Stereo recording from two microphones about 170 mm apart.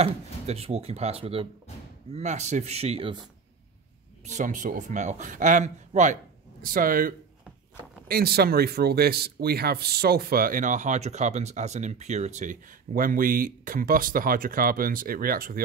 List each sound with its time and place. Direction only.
0.0 s speech: 35° right (ahead or behind)
4.2 s speech: 45° right (ahead or behind)
8.1 s speech: 65° right (ahead or behind)